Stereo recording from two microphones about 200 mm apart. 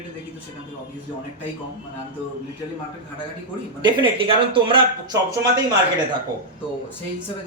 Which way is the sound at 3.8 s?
25° right (ahead or behind).